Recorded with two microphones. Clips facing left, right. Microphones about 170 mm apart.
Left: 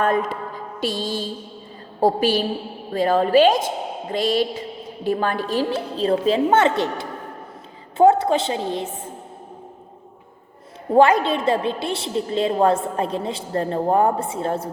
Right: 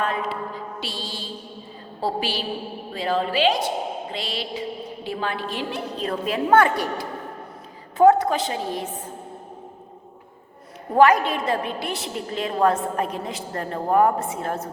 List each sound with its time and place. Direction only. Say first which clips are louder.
0.0 s a woman's voice: left 5 dB; 45° left (ahead or behind); by 8.9 s 25° left (ahead or behind)
10.9 s a woman's voice: left 2 dB; 30° left (ahead or behind)